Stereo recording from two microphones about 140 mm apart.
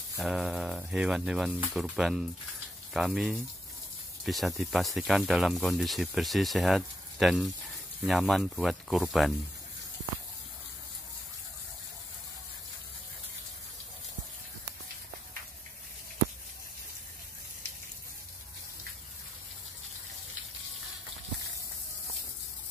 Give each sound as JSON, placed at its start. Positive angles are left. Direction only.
{"t": 0.2, "sound": "speech", "side_deg": -5}